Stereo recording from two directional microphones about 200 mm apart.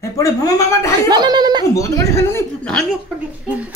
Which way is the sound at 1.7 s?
15° left (ahead or behind).